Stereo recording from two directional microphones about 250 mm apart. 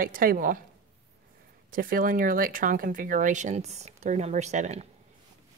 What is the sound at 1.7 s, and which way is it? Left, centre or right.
Speech, right.